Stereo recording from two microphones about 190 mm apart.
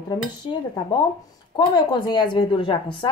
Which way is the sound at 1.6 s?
25° left (ahead or behind).